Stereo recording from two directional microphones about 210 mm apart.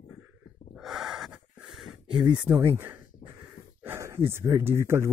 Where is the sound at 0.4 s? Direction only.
40° left (ahead or behind).